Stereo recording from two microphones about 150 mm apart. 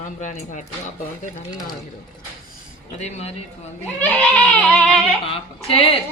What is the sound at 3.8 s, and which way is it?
Goat, 10° left (ahead or behind).